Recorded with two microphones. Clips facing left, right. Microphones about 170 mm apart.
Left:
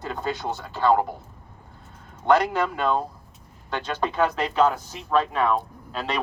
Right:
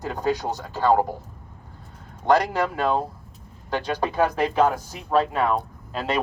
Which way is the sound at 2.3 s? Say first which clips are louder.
Even; 35° right (ahead or behind).